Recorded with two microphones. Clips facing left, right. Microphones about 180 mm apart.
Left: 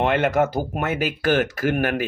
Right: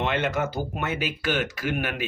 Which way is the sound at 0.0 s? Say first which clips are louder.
Left 6 dB; 50° left (ahead or behind).